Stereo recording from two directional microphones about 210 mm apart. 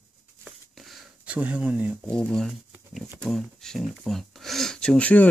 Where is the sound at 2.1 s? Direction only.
5° left (ahead or behind).